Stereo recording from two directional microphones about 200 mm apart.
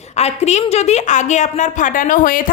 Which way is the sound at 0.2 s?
35° left (ahead or behind).